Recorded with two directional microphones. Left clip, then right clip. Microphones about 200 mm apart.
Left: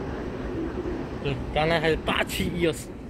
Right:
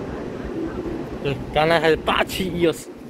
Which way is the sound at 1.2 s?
35° right (ahead or behind).